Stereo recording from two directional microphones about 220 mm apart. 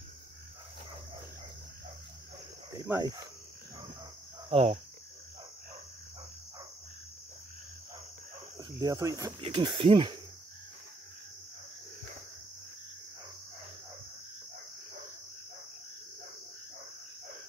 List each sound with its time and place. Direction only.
2.7 s speech: 15° right (ahead or behind)
4.5 s cricket: 25° right (ahead or behind)
8.5 s speech: 15° right (ahead or behind)